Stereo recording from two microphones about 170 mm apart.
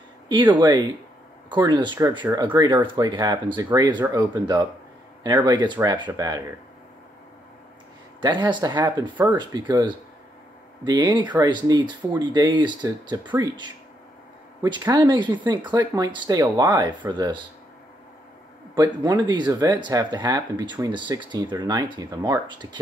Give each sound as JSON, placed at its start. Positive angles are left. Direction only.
{"t": 0.3, "sound": "speech", "side_deg": -25}
{"t": 8.2, "sound": "speech", "side_deg": -25}
{"t": 9.1, "sound": "speech", "side_deg": -10}
{"t": 9.4, "sound": "speech", "side_deg": -25}
{"t": 14.6, "sound": "speech", "side_deg": -20}
{"t": 18.8, "sound": "speech", "side_deg": -25}